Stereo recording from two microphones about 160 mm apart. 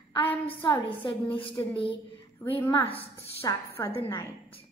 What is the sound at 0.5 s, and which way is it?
Speech, 30° left (ahead or behind).